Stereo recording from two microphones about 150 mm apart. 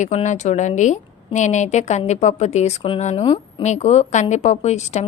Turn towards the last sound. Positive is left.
turn(degrees=50)  # may be behind; listen again after turning